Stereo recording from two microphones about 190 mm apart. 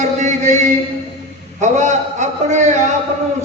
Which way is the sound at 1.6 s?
40° right (ahead or behind).